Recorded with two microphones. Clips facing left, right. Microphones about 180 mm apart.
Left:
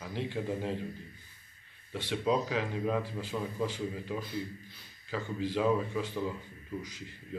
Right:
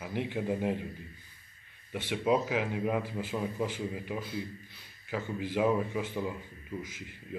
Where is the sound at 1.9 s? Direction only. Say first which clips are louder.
Right 2 dB; 15° right (ahead or behind).